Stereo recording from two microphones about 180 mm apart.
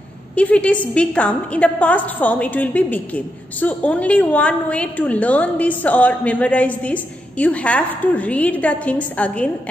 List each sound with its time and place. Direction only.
0.4 s a woman's voice: 5° left (ahead or behind)